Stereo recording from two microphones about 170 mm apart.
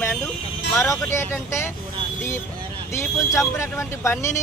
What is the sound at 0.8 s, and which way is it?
Speech, 15° left (ahead or behind).